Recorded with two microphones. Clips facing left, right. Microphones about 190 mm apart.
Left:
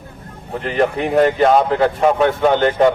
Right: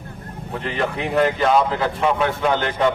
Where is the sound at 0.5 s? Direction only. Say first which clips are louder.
Left 6 dB; 40° left (ahead or behind).